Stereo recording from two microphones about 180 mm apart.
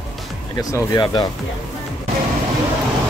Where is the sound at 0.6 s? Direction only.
20° left (ahead or behind).